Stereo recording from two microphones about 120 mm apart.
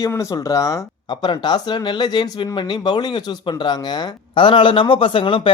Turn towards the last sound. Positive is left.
turn(degrees=45)  # may be behind; listen again after turning